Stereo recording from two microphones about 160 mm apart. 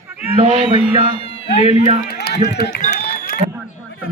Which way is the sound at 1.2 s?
40° left (ahead or behind).